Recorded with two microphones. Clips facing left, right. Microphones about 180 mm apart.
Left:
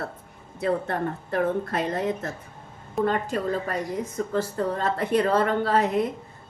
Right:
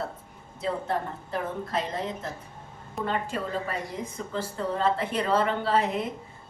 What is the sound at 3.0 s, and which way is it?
A woman's voice, 45° left (ahead or behind).